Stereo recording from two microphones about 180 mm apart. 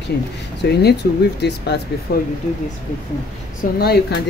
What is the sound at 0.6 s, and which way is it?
Speech, 70° left (ahead or behind).